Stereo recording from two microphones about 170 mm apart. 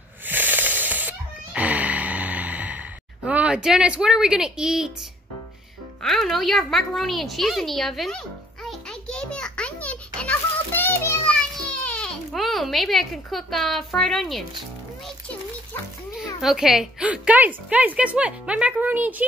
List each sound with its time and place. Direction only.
0.2 s music: 10° right (ahead or behind)
6.0 s a woman's voice: centre (ahead or behind)
8.6 s a sound: 5° left (ahead or behind)
15.0 s music: 5° left (ahead or behind)
16.3 s a woman's voice: centre (ahead or behind)